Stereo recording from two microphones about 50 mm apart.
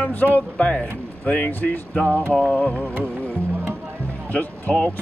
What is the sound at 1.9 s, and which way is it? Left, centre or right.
Speech, left.